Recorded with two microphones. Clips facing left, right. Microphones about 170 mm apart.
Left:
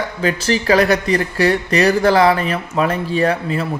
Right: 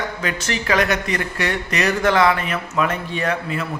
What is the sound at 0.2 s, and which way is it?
Speech, 30° left (ahead or behind).